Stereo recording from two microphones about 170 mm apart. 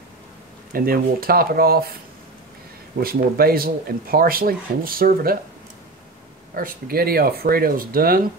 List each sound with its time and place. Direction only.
0.7 s speech: 60° right (ahead or behind)
3.0 s speech: 60° right (ahead or behind)
6.5 s speech: 60° right (ahead or behind)